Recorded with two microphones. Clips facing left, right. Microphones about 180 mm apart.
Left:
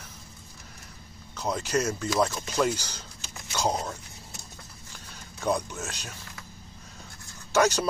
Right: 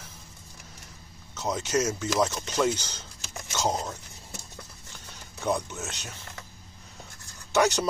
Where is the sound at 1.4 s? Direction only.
20° right (ahead or behind).